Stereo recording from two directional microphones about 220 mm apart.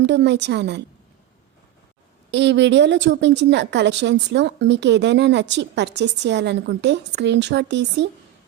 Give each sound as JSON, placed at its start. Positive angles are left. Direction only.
{"t": 0.0, "sound": "a woman's voice", "side_deg": -50}
{"t": 2.3, "sound": "a woman's voice", "side_deg": -55}